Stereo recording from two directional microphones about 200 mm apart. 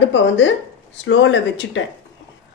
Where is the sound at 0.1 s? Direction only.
65° left (ahead or behind).